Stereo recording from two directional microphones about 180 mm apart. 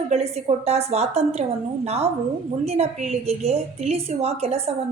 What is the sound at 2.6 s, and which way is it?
A woman's voice, 35° right (ahead or behind).